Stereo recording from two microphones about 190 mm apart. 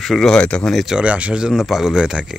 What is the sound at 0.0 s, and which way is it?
Speech, centre (ahead or behind).